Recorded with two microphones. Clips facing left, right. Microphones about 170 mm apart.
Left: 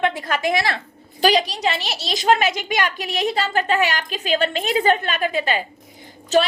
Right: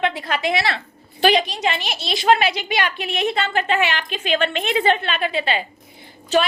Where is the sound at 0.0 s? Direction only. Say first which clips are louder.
Left 1 dB; 45° left (ahead or behind).